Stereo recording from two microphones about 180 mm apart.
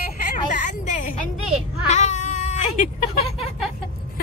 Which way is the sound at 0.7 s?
45° left (ahead or behind).